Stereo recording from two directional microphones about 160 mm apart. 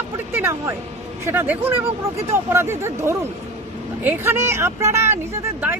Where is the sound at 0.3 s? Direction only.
15° right (ahead or behind).